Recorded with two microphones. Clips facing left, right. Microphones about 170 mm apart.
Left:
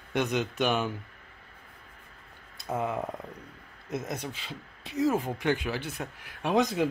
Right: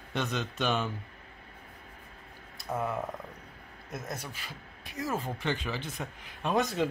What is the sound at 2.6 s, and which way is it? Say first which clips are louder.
Speech: left 2 dB; 20° left (ahead or behind).